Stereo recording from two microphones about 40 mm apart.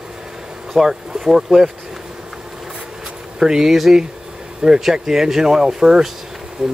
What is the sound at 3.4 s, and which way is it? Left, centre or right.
Speech, centre.